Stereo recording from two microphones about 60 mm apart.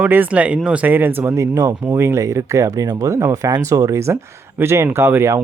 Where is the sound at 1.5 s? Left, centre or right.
Right.